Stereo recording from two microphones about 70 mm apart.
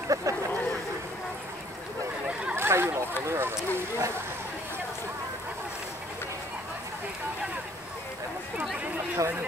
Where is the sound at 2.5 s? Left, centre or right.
Right.